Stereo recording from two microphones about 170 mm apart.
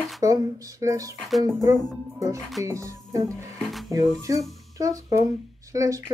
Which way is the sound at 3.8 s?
20° right (ahead or behind).